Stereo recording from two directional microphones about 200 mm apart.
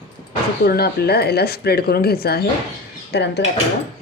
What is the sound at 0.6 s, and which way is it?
Speech, 50° left (ahead or behind).